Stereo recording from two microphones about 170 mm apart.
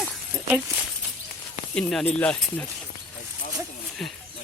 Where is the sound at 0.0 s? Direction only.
Centre (ahead or behind).